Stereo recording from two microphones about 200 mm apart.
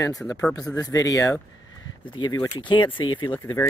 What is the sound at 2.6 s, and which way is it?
Speech, 25° left (ahead or behind).